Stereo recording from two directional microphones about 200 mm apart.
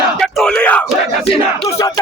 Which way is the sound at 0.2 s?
5° left (ahead or behind).